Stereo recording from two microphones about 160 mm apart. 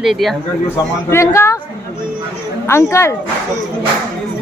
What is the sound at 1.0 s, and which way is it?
Speech, 15° left (ahead or behind).